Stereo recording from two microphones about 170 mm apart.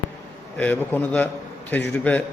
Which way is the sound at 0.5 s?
10° left (ahead or behind).